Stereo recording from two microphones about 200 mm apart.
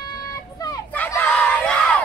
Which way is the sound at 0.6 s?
20° left (ahead or behind).